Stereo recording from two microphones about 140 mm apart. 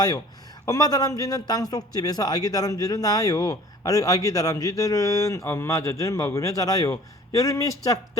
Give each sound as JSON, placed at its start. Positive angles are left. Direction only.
{"t": 0.6, "sound": "a man's voice", "side_deg": 25}